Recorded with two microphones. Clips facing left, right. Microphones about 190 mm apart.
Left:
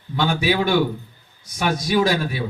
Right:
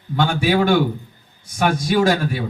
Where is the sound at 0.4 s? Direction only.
50° right (ahead or behind).